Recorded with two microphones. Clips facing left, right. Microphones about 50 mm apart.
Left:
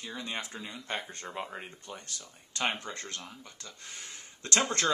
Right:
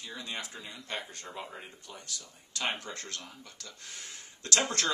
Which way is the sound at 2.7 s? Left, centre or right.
Left.